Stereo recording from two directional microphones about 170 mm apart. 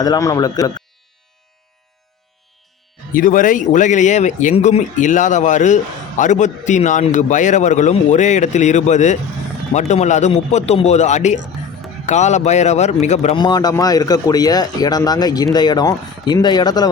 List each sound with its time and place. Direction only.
0.0 s speech: 20° left (ahead or behind)
3.1 s speech: 55° left (ahead or behind)
13.4 s speech: 25° left (ahead or behind)